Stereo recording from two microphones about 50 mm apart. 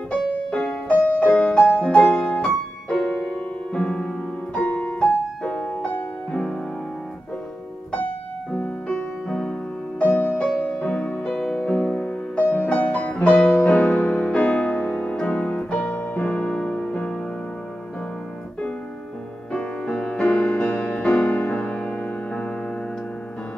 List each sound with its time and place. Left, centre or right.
0.1 s music: left
4.6 s piano: left
7.9 s music: left
8.8 s music: centre
9.9 s music: left
10.3 s music: left
11.3 s music: centre
11.6 s music: centre
19.5 s music: centre